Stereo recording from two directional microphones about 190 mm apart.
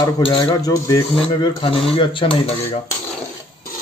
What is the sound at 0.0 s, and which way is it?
Speech, 25° left (ahead or behind).